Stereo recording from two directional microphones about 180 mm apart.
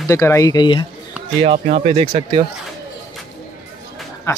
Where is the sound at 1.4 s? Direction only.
30° right (ahead or behind).